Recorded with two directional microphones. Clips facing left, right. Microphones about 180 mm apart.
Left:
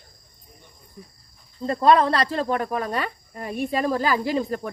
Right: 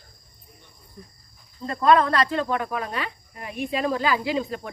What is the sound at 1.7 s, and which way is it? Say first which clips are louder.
Speech: left 1 dB; 30° left (ahead or behind).